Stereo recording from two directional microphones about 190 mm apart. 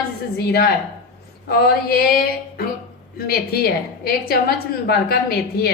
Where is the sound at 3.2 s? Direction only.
55° left (ahead or behind).